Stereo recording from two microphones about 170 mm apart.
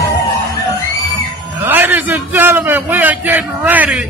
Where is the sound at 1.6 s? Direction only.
10° right (ahead or behind).